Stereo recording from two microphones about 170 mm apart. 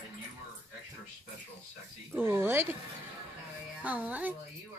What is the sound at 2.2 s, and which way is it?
Speech, 15° right (ahead or behind).